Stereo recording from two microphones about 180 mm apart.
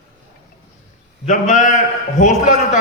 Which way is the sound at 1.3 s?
45° left (ahead or behind).